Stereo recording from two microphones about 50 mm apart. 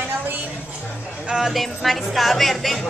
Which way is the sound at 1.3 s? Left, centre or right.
Centre.